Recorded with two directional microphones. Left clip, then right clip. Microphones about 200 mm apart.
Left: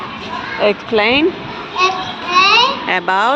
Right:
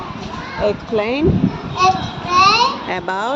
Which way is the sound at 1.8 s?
65° right (ahead or behind).